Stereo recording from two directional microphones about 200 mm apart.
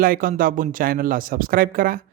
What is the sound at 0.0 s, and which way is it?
Speech, 45° right (ahead or behind).